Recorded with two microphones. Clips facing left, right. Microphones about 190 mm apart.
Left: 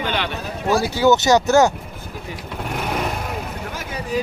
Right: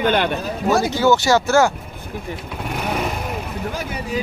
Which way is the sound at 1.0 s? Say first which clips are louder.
Left 4 dB; 20° left (ahead or behind).